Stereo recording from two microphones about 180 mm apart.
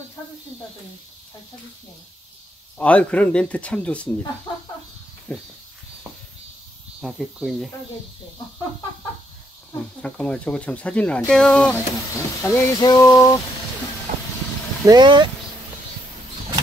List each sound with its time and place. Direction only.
2.8 s speech: 5° left (ahead or behind)
5.3 s speech: 10° left (ahead or behind)
7.0 s speech: centre (ahead or behind)
10.0 s speech: 5° left (ahead or behind)
12.4 s a sound: 15° left (ahead or behind)
14.1 s vehicle: 50° right (ahead or behind)
14.9 s speech: 25° right (ahead or behind)